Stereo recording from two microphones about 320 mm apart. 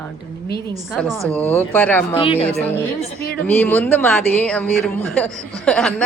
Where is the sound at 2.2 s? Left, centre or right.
Centre.